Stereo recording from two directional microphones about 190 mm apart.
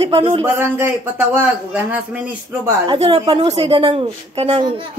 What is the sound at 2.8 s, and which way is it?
A woman's voice, 25° right (ahead or behind).